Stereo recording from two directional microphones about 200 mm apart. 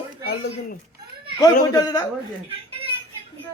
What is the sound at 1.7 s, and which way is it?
Speech, 20° left (ahead or behind).